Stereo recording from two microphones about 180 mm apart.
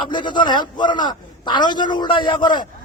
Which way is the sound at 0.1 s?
25° left (ahead or behind).